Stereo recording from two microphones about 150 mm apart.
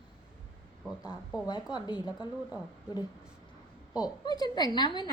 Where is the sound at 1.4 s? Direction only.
30° left (ahead or behind).